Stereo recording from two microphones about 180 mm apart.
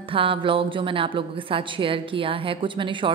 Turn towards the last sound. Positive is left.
turn(degrees=-25)  # may be behind; listen again after turning